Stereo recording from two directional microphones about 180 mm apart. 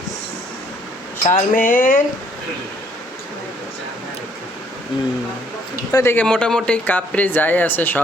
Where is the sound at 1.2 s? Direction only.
50° left (ahead or behind).